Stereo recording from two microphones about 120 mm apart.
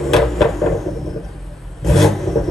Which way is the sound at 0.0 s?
Centre (ahead or behind).